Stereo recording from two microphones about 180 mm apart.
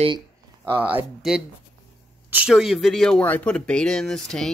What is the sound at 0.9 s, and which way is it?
Speech, 5° right (ahead or behind).